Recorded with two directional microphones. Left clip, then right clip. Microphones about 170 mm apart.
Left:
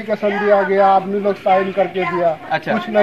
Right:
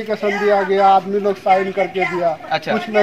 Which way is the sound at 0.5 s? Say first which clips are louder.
Even; 20° left (ahead or behind).